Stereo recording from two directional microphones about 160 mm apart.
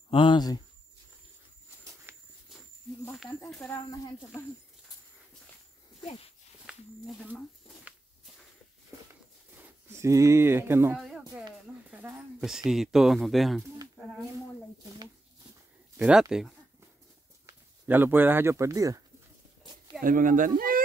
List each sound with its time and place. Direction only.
0.1 s speech: 30° left (ahead or behind)
2.1 s a sound: 15° right (ahead or behind)
3.3 s speech: 5° left (ahead or behind)
6.6 s a sound: 5° right (ahead or behind)
9.6 s speech: 15° right (ahead or behind)
11.0 s a sound: centre (ahead or behind)
11.9 s speech: 10° right (ahead or behind)
16.0 s speech: 5° right (ahead or behind); by 19.0 s 20° right (ahead or behind)
20.0 s speech: 55° right (ahead or behind)